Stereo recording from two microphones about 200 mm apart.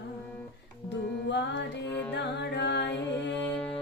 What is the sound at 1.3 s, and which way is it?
Carnatic music, 60° left (ahead or behind).